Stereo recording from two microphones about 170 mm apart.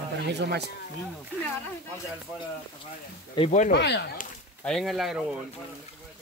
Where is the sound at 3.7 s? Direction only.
80° left.